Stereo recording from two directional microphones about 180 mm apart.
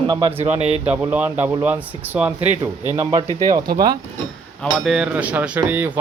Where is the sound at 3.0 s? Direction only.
20° right (ahead or behind).